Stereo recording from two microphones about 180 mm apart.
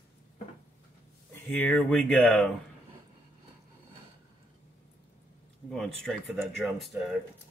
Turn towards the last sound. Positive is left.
turn(degrees=0)  # may be behind; listen again after turning